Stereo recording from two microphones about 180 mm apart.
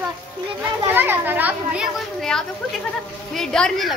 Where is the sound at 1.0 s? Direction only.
10° right (ahead or behind).